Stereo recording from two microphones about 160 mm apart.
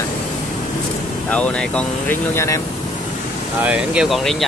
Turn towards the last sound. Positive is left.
turn(degrees=0)  # may be behind; listen again after turning